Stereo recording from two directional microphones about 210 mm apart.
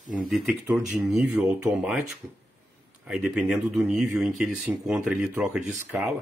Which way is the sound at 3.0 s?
5° right (ahead or behind).